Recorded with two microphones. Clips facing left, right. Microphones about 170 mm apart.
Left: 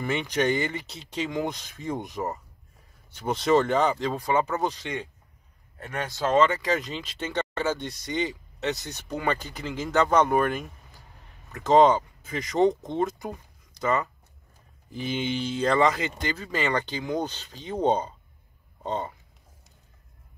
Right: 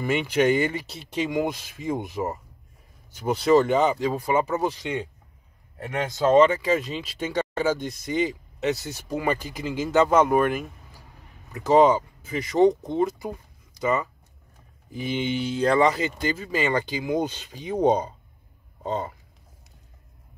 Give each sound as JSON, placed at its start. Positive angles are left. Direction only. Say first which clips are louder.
{"t": 0.0, "sound": "speech", "louder": "right 4 dB", "side_deg": -10}
{"t": 6.0, "sound": "speech", "louder": "right 5 dB", "side_deg": -20}
{"t": 6.7, "sound": "speech", "louder": "right 3 dB", "side_deg": -5}